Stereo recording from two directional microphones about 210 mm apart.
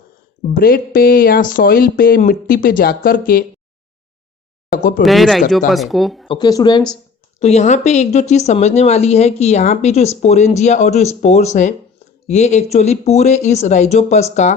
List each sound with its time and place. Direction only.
0.4 s speech: 45° left (ahead or behind)
4.7 s a sound: 40° left (ahead or behind)
5.0 s speech: centre (ahead or behind)
6.2 s speech: 20° left (ahead or behind)
7.3 s a woman's voice: 30° left (ahead or behind)